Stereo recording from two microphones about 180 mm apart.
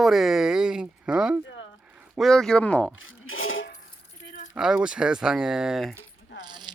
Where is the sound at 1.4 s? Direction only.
90° left.